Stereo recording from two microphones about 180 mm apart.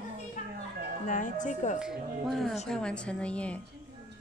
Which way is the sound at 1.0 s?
45° left (ahead or behind).